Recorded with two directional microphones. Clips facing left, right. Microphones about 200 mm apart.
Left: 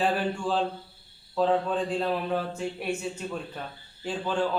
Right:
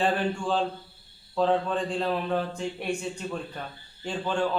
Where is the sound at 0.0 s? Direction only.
5° left (ahead or behind).